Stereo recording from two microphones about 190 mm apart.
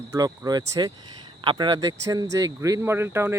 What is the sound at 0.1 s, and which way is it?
Speech, 20° right (ahead or behind).